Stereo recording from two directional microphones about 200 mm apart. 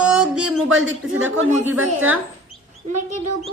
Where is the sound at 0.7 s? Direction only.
80° right.